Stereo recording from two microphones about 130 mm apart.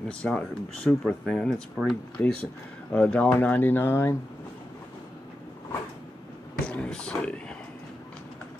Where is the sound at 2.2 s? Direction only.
20° left (ahead or behind).